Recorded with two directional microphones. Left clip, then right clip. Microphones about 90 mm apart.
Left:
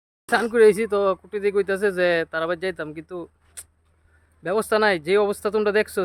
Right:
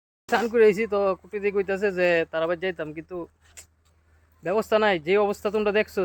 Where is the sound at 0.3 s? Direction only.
35° left (ahead or behind).